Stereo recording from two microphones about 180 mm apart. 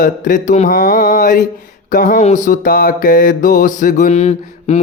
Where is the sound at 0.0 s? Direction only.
45° left (ahead or behind).